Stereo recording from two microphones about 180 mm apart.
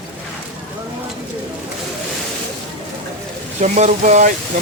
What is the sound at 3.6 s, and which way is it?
Speech, 40° right (ahead or behind).